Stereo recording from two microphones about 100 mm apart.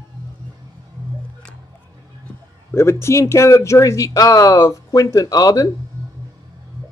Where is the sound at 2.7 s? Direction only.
25° left (ahead or behind).